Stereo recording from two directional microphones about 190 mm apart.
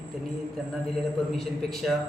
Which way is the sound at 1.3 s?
Centre (ahead or behind).